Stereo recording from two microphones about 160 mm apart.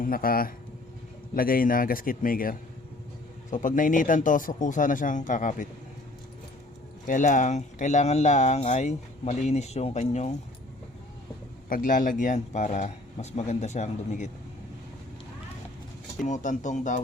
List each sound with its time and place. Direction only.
0.0 s speech: 65° left (ahead or behind)
7.1 s speech: 55° left (ahead or behind)
11.7 s speech: 55° left (ahead or behind)
16.2 s speech: 50° left (ahead or behind)